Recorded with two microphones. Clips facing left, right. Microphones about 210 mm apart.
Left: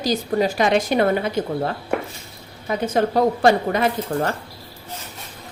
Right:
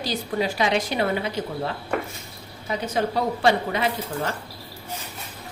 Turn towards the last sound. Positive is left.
turn(degrees=50)  # may be behind; listen again after turning